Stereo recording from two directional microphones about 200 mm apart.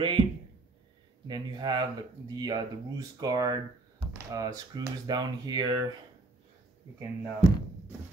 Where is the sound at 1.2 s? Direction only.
20° right (ahead or behind).